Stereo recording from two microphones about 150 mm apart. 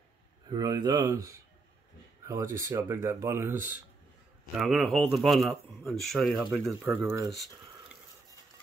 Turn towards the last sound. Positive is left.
turn(degrees=-20)  # may be behind; listen again after turning